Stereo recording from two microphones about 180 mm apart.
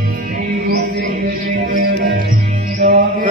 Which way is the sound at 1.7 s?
50° right (ahead or behind).